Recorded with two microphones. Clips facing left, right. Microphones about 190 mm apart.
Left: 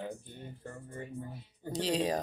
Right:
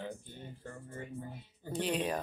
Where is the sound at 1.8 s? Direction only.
90° left.